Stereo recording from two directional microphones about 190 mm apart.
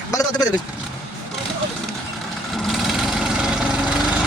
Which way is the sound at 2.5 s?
Centre (ahead or behind).